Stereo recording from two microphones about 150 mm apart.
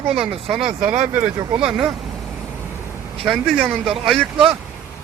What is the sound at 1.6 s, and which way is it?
Speech, 5° right (ahead or behind).